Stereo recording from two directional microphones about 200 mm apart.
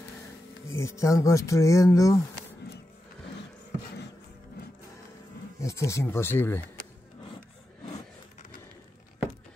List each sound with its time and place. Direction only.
0.7 s speech: 15° left (ahead or behind)
5.6 s speech: 15° left (ahead or behind)
7.8 s a sound: 35° left (ahead or behind)